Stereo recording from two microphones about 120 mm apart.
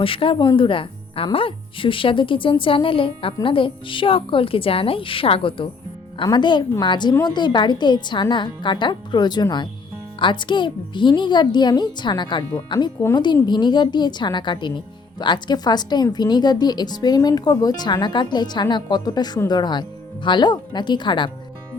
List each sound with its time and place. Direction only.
0.0 s a woman's voice: 50° left (ahead or behind)